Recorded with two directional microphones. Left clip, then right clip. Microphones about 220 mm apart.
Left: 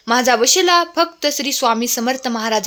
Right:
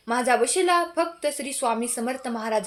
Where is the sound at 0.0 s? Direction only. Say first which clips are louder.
Left 7 dB; 40° left (ahead or behind).